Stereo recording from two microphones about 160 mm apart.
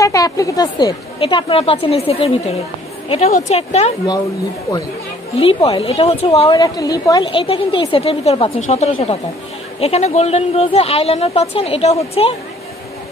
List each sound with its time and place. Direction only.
0.0 s a woman's voice: 20° left (ahead or behind); by 3.9 s 40° left (ahead or behind)
5.6 s a woman's voice: 25° left (ahead or behind)
5.9 s a woman's voice: 40° left (ahead or behind)
6.6 s a woman's voice: 20° left (ahead or behind)
7.2 s a woman's voice: 35° left (ahead or behind)